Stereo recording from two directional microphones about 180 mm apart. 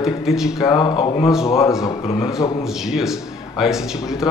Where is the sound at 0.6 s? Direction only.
20° left (ahead or behind).